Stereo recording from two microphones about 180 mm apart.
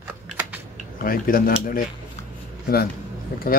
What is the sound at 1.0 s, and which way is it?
Speech, 50° left (ahead or behind).